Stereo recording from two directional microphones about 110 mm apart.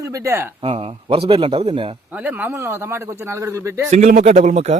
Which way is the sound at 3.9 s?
90° right.